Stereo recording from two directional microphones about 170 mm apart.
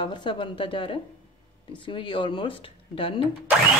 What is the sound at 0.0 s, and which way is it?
A woman's voice, 30° left (ahead or behind).